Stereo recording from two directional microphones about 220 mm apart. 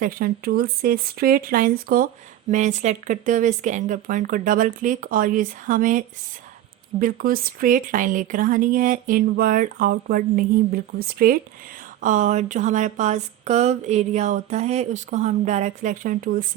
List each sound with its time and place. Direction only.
0.0 s speech: 40° right (ahead or behind)
7.0 s speech: 40° right (ahead or behind)